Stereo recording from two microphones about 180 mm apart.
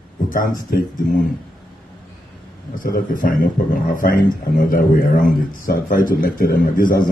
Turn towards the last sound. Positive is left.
turn(degrees=50)  # may be behind; listen again after turning